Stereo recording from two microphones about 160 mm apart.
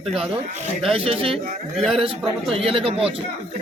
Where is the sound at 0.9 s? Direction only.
35° right (ahead or behind).